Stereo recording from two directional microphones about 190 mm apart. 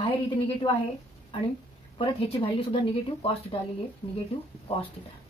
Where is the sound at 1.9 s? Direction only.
30° left (ahead or behind).